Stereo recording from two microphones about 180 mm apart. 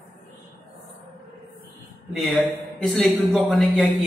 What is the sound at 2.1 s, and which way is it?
A man's voice, centre (ahead or behind).